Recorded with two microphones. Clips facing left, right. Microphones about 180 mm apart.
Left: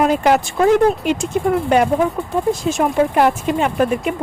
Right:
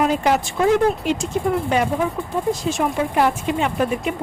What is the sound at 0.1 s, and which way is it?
Speech, 55° left (ahead or behind).